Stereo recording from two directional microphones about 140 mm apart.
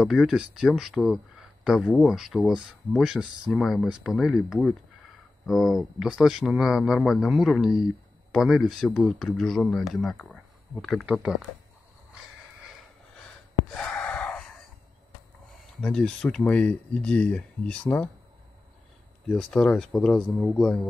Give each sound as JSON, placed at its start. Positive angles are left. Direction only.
{"t": 0.0, "sound": "speech", "side_deg": 0}
{"t": 13.7, "sound": "gasp", "side_deg": 5}
{"t": 15.8, "sound": "speech", "side_deg": 5}
{"t": 19.2, "sound": "speech", "side_deg": 5}